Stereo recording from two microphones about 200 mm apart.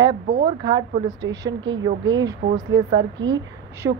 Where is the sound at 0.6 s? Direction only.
20° right (ahead or behind).